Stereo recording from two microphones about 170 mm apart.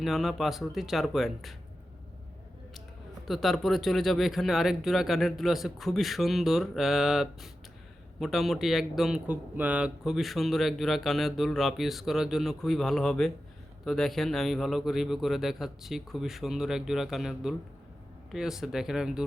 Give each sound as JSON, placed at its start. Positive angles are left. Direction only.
{"t": 0.0, "sound": "speech", "side_deg": 0}
{"t": 3.2, "sound": "speech", "side_deg": 0}